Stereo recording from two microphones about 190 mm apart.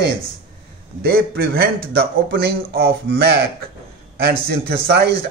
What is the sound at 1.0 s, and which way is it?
A man's voice, 55° right (ahead or behind).